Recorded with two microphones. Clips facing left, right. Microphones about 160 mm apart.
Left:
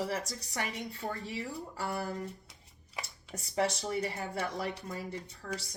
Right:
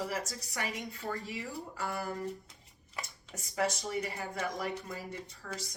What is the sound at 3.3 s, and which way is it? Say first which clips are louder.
A woman's voice: left 2 dB; 30° left (ahead or behind).